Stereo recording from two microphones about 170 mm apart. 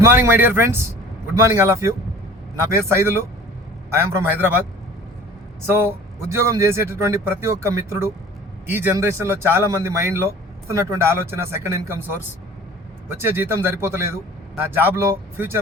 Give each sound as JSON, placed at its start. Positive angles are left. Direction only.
{"t": 0.0, "sound": "speech", "side_deg": -10}
{"t": 5.6, "sound": "speech", "side_deg": -15}